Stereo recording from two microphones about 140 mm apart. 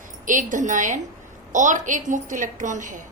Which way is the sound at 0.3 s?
65° right (ahead or behind).